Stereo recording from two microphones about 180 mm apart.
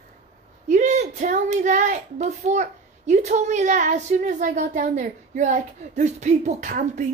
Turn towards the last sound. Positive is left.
turn(degrees=-45)  # may be behind; listen again after turning